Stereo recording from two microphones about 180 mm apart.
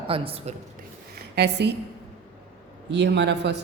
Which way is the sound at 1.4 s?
70° right (ahead or behind).